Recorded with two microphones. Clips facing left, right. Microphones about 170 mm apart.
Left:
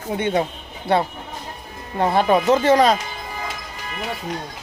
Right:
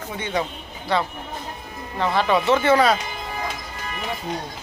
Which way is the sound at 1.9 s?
45° left (ahead or behind).